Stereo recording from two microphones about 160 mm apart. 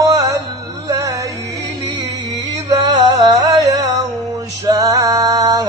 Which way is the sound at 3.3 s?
20° right (ahead or behind).